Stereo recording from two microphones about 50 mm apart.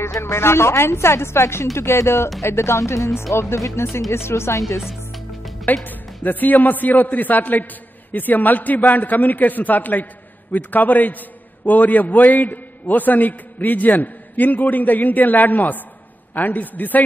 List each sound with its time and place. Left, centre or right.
0.0 s speech: left
2.4 s speech: left
4.8 s music: centre
6.2 s a man's voice: left